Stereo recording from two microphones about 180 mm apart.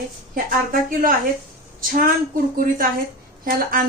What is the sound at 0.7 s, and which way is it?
Speech, 50° right (ahead or behind).